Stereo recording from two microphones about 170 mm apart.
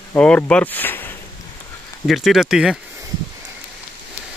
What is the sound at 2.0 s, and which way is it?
Speech, centre (ahead or behind).